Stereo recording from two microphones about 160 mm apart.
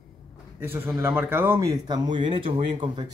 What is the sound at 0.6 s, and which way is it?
Speech, 15° right (ahead or behind).